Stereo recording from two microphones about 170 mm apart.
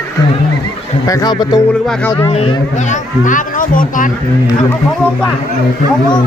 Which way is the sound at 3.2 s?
50° left (ahead or behind).